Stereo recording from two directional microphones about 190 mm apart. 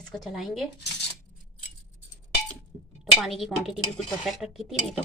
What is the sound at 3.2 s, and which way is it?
A woman's voice, centre (ahead or behind).